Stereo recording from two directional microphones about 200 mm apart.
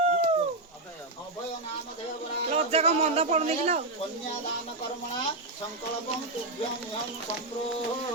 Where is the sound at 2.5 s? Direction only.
30° right (ahead or behind).